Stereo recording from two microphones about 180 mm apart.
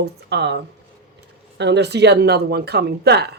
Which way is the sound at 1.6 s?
70° right (ahead or behind).